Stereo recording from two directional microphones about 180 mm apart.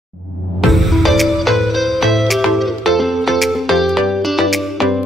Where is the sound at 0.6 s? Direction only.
Centre (ahead or behind).